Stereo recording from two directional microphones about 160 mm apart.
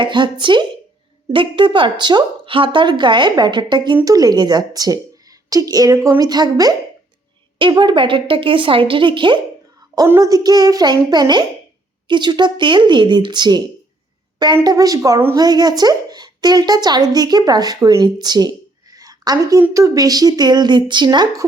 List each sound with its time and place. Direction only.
0.0 s a woman's voice: 30° right (ahead or behind)